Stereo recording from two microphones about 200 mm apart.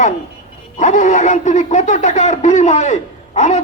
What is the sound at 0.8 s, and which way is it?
Speech, 40° left (ahead or behind).